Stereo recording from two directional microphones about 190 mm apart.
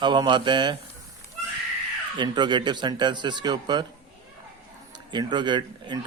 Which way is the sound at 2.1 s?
25° right (ahead or behind).